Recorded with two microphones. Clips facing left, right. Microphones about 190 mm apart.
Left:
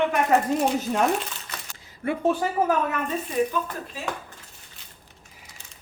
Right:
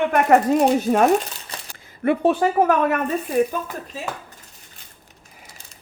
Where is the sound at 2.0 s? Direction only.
65° right (ahead or behind).